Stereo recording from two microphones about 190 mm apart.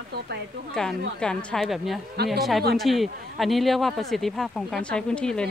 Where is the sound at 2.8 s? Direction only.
Centre (ahead or behind).